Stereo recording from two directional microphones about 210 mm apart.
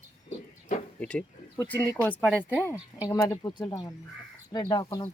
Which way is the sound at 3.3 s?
20° left (ahead or behind).